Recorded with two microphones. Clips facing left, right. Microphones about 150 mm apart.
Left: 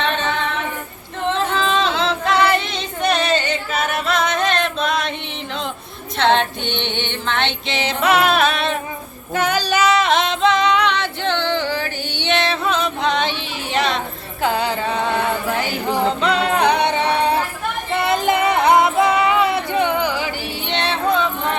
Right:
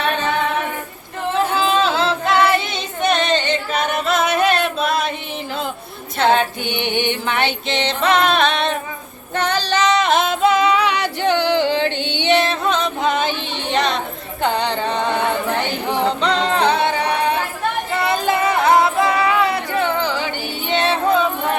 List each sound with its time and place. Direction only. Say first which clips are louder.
0.0 s female singing: right 2 dB; 10° right (ahead or behind)
6.1 s speech: right 1 dB; 5° right (ahead or behind)
7.7 s music: left 1 dB; 5° left (ahead or behind)
9.3 s female singing: left 1 dB; 10° left (ahead or behind); by 12.4 s 15° right (ahead or behind)
12.4 s music: right 1 dB; centre (ahead or behind)
20.7 s music: right 3 dB; centre (ahead or behind)